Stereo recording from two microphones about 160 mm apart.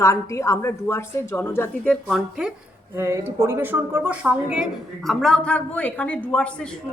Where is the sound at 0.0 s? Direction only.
20° left (ahead or behind).